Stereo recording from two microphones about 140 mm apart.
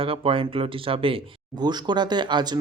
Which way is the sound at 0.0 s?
40° right (ahead or behind).